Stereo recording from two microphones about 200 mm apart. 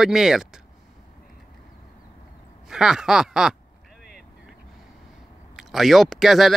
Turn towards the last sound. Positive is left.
turn(degrees=0)  # may be behind; listen again after turning